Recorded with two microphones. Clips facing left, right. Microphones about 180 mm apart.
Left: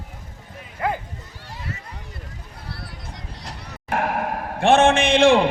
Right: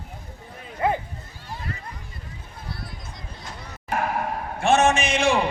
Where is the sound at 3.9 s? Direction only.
60° left (ahead or behind).